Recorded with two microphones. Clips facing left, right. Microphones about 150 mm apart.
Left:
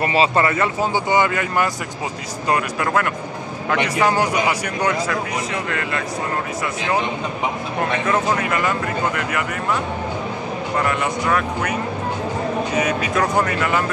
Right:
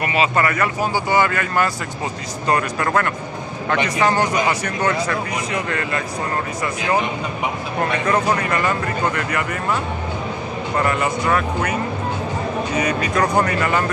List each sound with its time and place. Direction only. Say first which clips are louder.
0.0 s speech: left 2 dB; 30° left (ahead or behind)
2.5 s speech: right 1 dB; 5° left (ahead or behind)
5.1 s speech: even; centre (ahead or behind)
7.8 s speech: right 1 dB; 5° left (ahead or behind)
10.8 s speech: right 2 dB; centre (ahead or behind)